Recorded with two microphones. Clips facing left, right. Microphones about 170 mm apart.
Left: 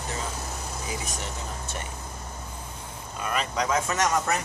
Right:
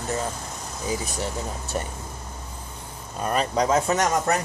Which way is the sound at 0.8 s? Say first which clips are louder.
Right 9 dB; 35° right (ahead or behind).